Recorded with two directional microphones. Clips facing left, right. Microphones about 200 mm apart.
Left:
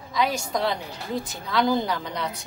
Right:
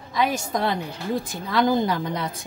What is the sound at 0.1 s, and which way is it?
Speech, 50° right (ahead or behind).